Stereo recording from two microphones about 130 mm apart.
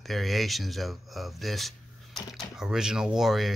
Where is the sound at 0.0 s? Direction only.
Centre (ahead or behind).